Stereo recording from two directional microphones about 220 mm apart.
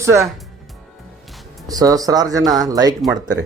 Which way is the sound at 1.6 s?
15° right (ahead or behind).